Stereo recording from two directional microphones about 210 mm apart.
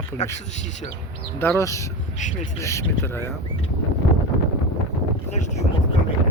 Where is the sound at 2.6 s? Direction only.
15° left (ahead or behind).